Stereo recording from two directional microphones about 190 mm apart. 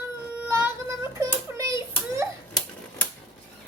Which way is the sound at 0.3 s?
10° right (ahead or behind).